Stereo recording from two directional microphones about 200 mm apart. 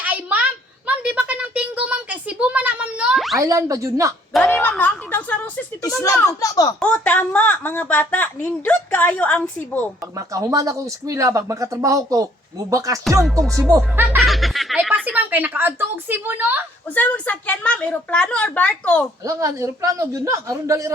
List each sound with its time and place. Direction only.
0.0 s a sound: 5° right (ahead or behind)
3.3 s speech: 15° right (ahead or behind)
4.3 s a woman's voice: centre (ahead or behind); by 6.7 s 20° left (ahead or behind)
6.7 s a woman's voice: 5° left (ahead or behind)
10.2 s speech: 15° right (ahead or behind)
14.2 s speech: centre (ahead or behind)
16.9 s a woman's voice: 10° left (ahead or behind)
19.2 s speech: 15° right (ahead or behind)